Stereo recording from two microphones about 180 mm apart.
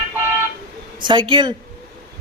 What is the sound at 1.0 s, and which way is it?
Speech, 25° right (ahead or behind).